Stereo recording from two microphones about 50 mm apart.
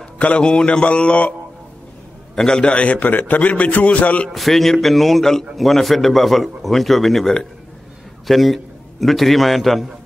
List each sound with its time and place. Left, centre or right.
0.2 s mantra: left
2.3 s a man's voice: centre
2.7 s a man's voice: left
4.3 s a man's voice: centre